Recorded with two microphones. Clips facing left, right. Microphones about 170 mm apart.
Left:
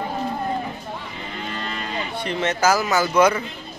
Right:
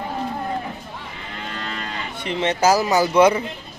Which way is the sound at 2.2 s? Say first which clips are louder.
Right 2 dB; 25° right (ahead or behind).